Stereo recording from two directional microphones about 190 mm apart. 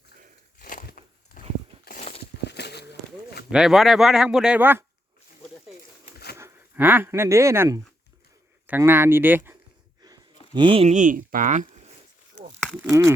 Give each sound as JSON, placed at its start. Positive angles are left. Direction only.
{"t": 0.6, "sound": "a sound", "side_deg": 50}
{"t": 2.4, "sound": "horse", "side_deg": 60}
{"t": 3.5, "sound": "speech", "side_deg": 0}
{"t": 6.3, "sound": "speech", "side_deg": -10}
{"t": 10.5, "sound": "speech", "side_deg": -25}
{"t": 12.8, "sound": "speech", "side_deg": -15}